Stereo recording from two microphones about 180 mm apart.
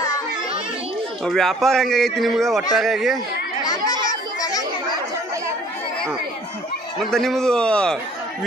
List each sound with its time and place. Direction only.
1.2 s a man's voice: centre (ahead or behind)
4.4 s chatter: 20° left (ahead or behind)
7.1 s a man's voice: centre (ahead or behind)